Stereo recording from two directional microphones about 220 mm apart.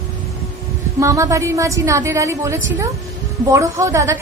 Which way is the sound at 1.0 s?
15° right (ahead or behind).